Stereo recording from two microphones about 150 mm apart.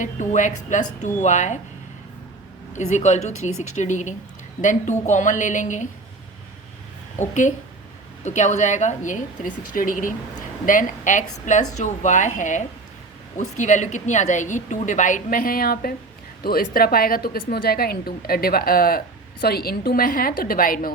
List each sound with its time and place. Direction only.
0.0 s a woman's voice: 55° left (ahead or behind)
2.9 s a woman's voice: 50° left (ahead or behind)
7.2 s a woman's voice: 55° left (ahead or behind); by 20.9 s 70° left (ahead or behind)